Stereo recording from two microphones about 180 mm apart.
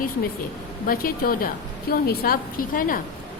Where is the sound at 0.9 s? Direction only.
55° left (ahead or behind).